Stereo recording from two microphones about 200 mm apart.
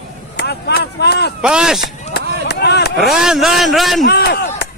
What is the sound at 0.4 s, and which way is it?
Speech, 55° left (ahead or behind).